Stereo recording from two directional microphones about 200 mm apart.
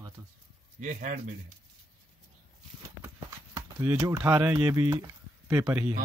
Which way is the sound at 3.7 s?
10° right (ahead or behind).